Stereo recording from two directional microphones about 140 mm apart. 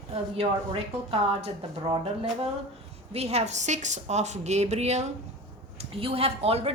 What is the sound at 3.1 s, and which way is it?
A woman's voice, 50° right (ahead or behind).